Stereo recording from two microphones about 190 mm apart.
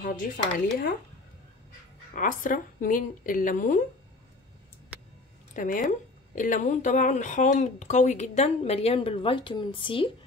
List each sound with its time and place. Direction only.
0.0 s speech: 45° left (ahead or behind)
2.1 s speech: 45° left (ahead or behind)
5.5 s speech: 45° left (ahead or behind); by 10.1 s 25° left (ahead or behind)